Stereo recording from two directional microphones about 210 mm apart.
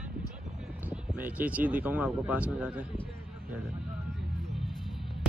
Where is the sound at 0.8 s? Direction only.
10° right (ahead or behind).